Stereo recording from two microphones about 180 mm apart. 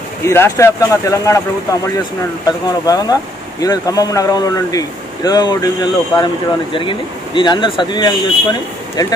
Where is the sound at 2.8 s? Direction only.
20° left (ahead or behind).